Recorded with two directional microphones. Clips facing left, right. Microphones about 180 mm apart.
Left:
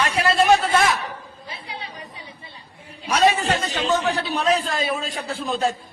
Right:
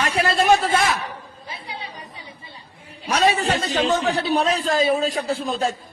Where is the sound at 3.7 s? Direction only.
35° right (ahead or behind).